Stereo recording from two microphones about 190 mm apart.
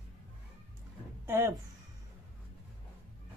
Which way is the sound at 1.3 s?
15° right (ahead or behind).